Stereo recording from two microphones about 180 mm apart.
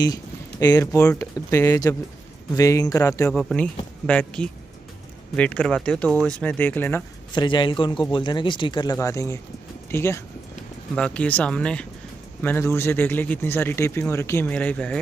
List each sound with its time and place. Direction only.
0.0 s speech: 20° left (ahead or behind)
3.3 s speech: 5° left (ahead or behind)
7.3 s a man's voice: 25° left (ahead or behind); by 15.0 s 5° left (ahead or behind)